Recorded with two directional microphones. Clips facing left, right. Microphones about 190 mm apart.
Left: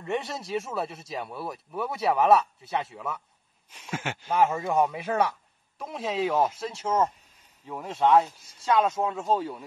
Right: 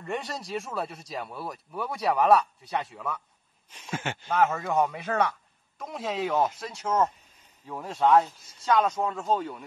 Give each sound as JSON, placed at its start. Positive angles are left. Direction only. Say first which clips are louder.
{"t": 0.0, "sound": "speech", "louder": "left 3 dB", "side_deg": 0}
{"t": 2.1, "sound": "speech", "louder": "even", "side_deg": 25}
{"t": 3.7, "sound": "speech", "louder": "even", "side_deg": 5}